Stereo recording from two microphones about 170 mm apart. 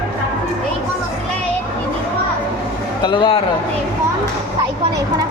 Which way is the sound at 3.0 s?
30° left (ahead or behind).